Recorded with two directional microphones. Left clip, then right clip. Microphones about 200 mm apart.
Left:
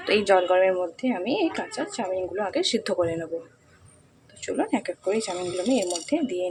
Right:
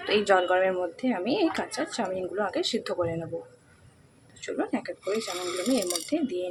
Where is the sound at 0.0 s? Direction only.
15° left (ahead or behind).